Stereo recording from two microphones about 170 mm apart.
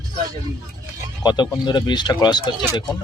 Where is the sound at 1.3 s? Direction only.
25° left (ahead or behind).